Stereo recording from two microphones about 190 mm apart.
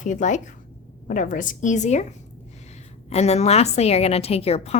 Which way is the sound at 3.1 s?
35° left (ahead or behind).